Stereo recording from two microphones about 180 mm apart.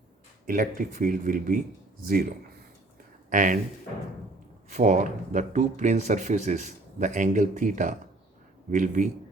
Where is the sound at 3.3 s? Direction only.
45° right (ahead or behind).